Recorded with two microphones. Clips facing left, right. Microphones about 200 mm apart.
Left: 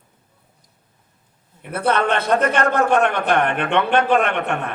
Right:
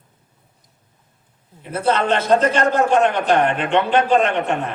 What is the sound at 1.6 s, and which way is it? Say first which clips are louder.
A man's voice: even; 60° left (ahead or behind).